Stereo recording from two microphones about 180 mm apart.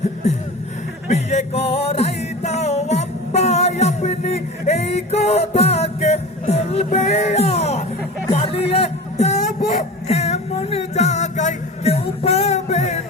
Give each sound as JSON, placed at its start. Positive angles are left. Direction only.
{"t": 1.0, "sound": "music", "side_deg": 40}